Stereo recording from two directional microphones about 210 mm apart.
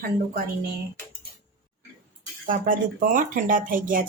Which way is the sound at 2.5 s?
40° right (ahead or behind).